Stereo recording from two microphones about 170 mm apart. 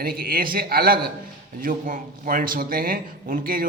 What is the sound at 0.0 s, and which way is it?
Speech, 60° right (ahead or behind).